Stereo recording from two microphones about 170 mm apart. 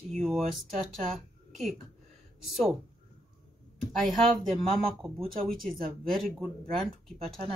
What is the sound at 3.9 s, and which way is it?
Speech, centre (ahead or behind).